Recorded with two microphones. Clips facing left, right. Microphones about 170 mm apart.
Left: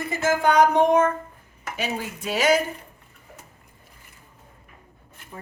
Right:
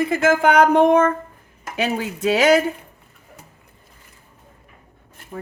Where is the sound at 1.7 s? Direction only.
65° right (ahead or behind).